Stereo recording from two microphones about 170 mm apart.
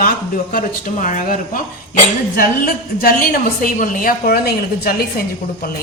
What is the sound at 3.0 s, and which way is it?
A woman's voice, 60° left (ahead or behind).